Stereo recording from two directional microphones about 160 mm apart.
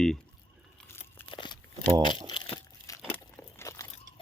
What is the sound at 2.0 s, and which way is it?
Speech, 30° left (ahead or behind).